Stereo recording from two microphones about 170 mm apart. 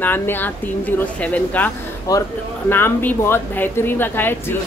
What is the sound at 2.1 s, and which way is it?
A woman's voice, 20° left (ahead or behind).